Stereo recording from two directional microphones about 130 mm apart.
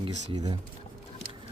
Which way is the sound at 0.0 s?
30° right (ahead or behind).